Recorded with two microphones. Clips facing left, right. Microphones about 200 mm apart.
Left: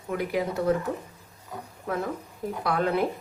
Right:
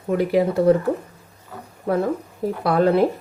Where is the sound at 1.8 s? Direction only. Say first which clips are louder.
Right 9 dB; 35° right (ahead or behind).